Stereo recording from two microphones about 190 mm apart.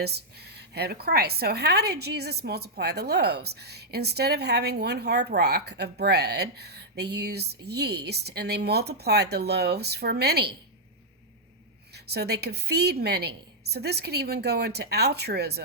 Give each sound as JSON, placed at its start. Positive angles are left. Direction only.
{"t": 0.0, "sound": "a woman's voice", "side_deg": -60}
{"t": 11.9, "sound": "a woman's voice", "side_deg": -60}